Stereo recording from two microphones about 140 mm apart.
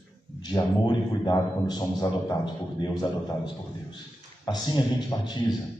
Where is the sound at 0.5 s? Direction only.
30° left (ahead or behind).